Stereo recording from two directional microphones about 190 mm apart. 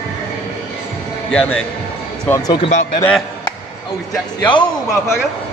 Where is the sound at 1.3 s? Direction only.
5° left (ahead or behind).